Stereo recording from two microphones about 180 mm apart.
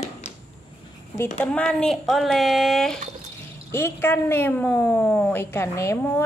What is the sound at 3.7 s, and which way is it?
A woman's voice, 10° left (ahead or behind).